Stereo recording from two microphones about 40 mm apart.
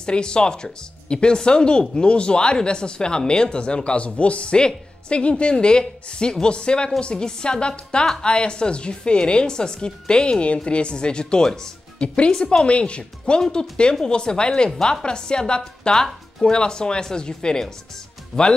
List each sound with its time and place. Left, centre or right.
0.0 s speech: left
13.2 s speech: centre